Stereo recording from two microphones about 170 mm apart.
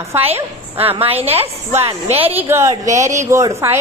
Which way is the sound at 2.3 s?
15° right (ahead or behind).